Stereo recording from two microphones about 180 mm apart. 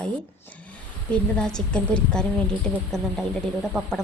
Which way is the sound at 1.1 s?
5° left (ahead or behind).